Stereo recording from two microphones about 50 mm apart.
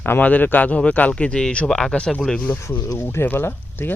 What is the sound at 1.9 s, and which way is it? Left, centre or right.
Speech, left.